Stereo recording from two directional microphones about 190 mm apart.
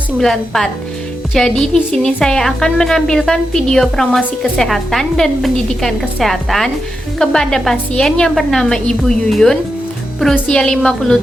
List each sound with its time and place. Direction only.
0.2 s a woman's voice: centre (ahead or behind)